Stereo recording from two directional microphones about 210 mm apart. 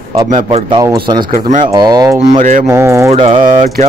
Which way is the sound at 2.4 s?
40° right (ahead or behind).